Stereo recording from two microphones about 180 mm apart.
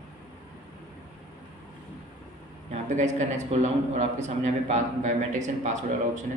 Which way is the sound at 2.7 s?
40° right (ahead or behind).